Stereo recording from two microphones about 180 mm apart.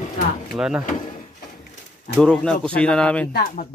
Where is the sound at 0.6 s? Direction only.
5° right (ahead or behind).